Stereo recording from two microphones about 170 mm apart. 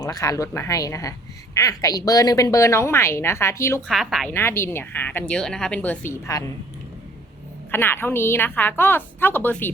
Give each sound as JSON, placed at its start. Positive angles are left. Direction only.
{"t": 0.0, "sound": "a woman's voice", "side_deg": 20}
{"t": 3.8, "sound": "a woman's voice", "side_deg": 0}
{"t": 4.3, "sound": "a woman's voice", "side_deg": 15}
{"t": 7.7, "sound": "a woman's voice", "side_deg": 15}